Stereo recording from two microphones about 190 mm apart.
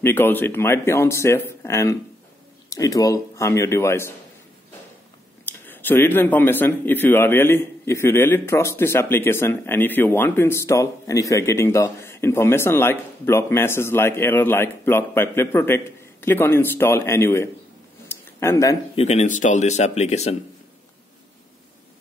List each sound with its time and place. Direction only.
0.0 s speech: 10° left (ahead or behind)
5.4 s speech: 10° left (ahead or behind)
18.1 s a sound: 15° left (ahead or behind)
18.9 s speech: 35° left (ahead or behind)